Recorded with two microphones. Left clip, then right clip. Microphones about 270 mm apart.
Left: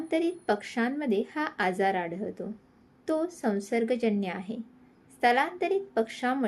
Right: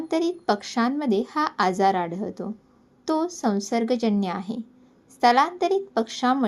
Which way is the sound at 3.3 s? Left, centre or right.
Centre.